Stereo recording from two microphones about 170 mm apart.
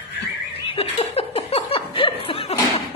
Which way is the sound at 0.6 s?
35° left (ahead or behind).